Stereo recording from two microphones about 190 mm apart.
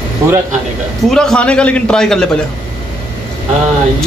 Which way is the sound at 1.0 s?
5° left (ahead or behind).